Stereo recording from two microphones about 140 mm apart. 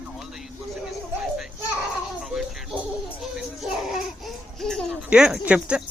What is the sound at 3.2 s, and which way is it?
Music, centre (ahead or behind).